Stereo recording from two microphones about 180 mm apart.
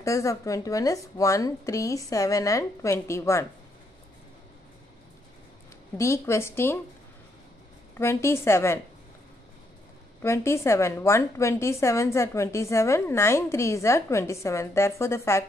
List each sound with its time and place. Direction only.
0.0 s a woman's voice: 15° left (ahead or behind)
5.9 s a woman's voice: 15° left (ahead or behind)
8.0 s a woman's voice: 15° left (ahead or behind)
10.2 s a woman's voice: 15° left (ahead or behind)